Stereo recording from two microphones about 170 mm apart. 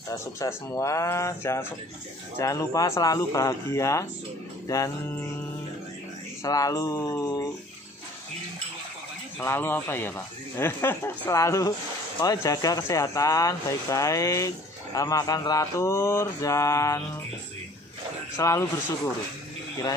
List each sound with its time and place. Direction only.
0.1 s speech: 15° left (ahead or behind)
6.4 s speech: 20° left (ahead or behind)
9.4 s speech: 15° left (ahead or behind)
18.4 s speech: 20° left (ahead or behind)